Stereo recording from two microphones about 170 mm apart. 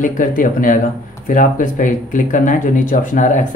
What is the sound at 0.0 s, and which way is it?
Speech, 50° left (ahead or behind).